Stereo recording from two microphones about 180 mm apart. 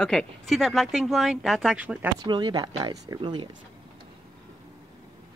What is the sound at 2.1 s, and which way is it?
Speech, 25° right (ahead or behind).